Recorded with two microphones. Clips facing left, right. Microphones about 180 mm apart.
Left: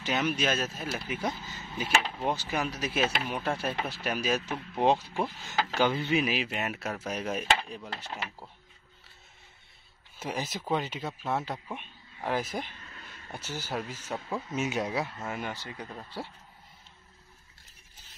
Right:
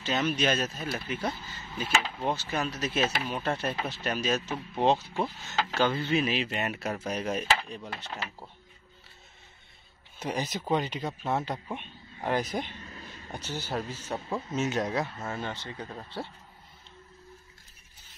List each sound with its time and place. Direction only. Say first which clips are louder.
0.0 s speech: right 1 dB; 10° left (ahead or behind)
10.1 s speech: right 2 dB; 5° left (ahead or behind)
12.6 s vehicle: right 5 dB; 30° right (ahead or behind)
13.3 s speech: right 2 dB; 10° left (ahead or behind)
13.9 s speech: right 1 dB; 10° right (ahead or behind)
14.5 s speech: right 2 dB; 10° left (ahead or behind)